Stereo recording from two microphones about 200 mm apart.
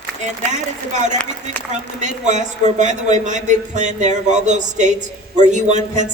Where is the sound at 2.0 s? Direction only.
35° right (ahead or behind).